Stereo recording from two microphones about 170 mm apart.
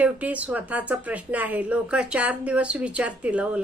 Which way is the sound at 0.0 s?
10° right (ahead or behind).